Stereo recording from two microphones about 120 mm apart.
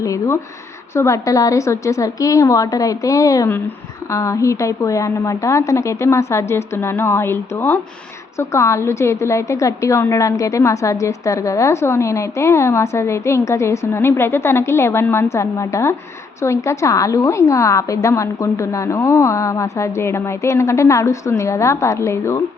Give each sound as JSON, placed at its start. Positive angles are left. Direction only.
{"t": 0.0, "sound": "a woman's voice", "side_deg": 25}